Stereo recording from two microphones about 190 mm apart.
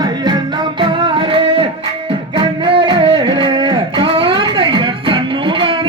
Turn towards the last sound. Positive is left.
turn(degrees=-25)  # may be behind; listen again after turning